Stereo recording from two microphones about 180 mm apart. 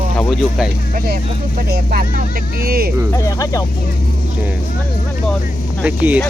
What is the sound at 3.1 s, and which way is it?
Speech, 15° left (ahead or behind).